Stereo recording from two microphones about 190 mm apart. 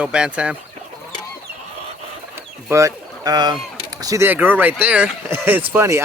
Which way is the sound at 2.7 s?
20° right (ahead or behind).